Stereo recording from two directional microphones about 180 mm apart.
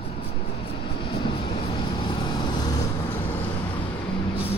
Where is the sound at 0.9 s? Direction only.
25° left (ahead or behind).